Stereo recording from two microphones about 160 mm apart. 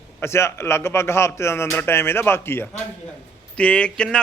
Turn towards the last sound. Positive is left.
turn(degrees=5)  # may be behind; listen again after turning